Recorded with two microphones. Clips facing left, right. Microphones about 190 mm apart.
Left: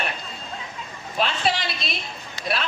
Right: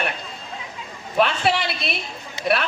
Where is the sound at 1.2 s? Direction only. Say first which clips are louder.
Right 4 dB; 60° right (ahead or behind).